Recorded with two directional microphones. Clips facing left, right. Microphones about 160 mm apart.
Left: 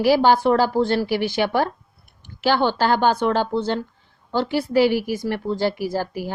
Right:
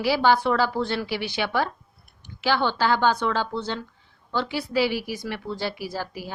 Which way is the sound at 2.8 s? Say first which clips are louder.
Left 3 dB; 50° left (ahead or behind).